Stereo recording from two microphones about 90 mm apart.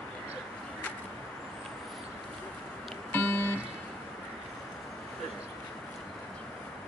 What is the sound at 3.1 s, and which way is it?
Music, 25° left (ahead or behind).